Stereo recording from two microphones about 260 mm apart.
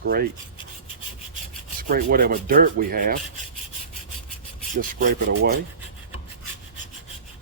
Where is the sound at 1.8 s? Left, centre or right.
Right.